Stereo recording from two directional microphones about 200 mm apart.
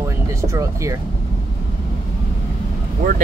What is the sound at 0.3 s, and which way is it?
Speech, 15° right (ahead or behind).